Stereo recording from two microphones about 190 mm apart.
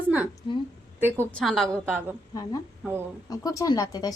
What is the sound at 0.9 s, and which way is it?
Speech, 10° right (ahead or behind).